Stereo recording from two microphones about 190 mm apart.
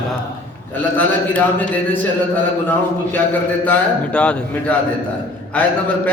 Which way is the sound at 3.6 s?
5° left (ahead or behind).